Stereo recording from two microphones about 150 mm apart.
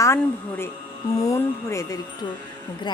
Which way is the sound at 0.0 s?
15° left (ahead or behind).